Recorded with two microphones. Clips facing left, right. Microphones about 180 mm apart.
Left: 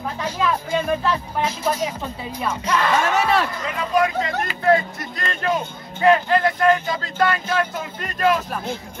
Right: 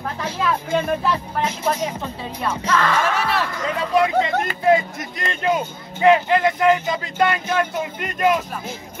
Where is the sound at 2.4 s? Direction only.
15° left (ahead or behind).